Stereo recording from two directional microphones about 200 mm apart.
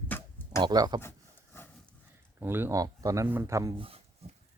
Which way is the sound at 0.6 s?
20° right (ahead or behind).